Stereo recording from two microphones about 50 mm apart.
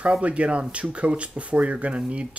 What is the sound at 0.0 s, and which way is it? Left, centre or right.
Speech, right.